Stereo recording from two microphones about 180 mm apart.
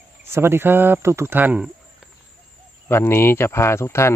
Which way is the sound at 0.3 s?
15° right (ahead or behind).